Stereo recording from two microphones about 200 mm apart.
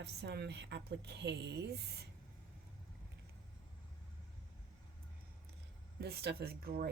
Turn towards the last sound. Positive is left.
turn(degrees=-50)  # may be behind; listen again after turning